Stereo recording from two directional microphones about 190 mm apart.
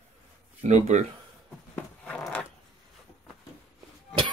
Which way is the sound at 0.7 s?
35° right (ahead or behind).